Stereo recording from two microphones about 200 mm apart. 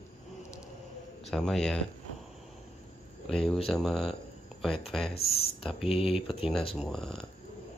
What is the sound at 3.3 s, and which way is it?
Speech, 5° left (ahead or behind).